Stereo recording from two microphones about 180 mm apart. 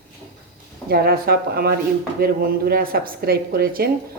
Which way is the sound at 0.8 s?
60° right (ahead or behind).